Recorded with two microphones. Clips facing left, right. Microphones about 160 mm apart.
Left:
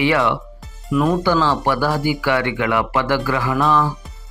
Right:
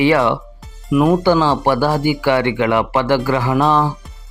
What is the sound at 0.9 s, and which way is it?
Speech, 15° right (ahead or behind).